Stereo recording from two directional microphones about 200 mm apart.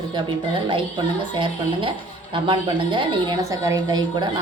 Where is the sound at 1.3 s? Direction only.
25° right (ahead or behind).